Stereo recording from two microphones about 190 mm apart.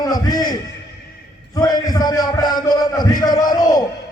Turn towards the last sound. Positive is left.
turn(degrees=20)  # may be behind; listen again after turning